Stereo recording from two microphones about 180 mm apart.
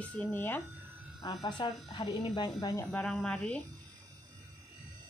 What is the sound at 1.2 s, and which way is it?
Speech, 25° left (ahead or behind).